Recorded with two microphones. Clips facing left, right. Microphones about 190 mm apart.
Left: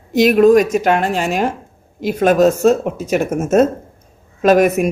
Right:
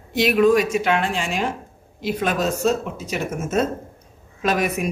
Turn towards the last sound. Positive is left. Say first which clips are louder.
# left 10 dB
turn(degrees=50)  # may be behind; listen again after turning